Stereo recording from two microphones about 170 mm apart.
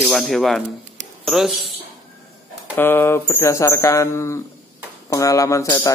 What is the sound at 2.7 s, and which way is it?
Speech, 10° left (ahead or behind).